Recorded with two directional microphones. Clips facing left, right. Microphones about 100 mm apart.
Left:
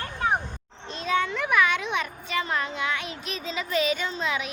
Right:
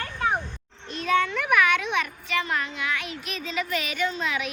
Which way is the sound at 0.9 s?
25° left (ahead or behind).